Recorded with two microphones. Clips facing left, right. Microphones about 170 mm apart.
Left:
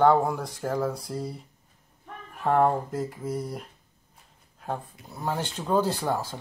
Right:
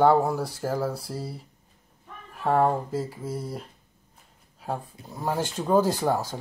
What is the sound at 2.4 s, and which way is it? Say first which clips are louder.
Speech: even; 5° right (ahead or behind).